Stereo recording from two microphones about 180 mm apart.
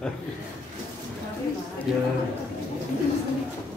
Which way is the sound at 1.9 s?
5° right (ahead or behind).